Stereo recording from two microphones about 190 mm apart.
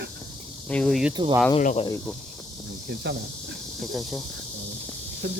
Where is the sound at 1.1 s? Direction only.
20° right (ahead or behind).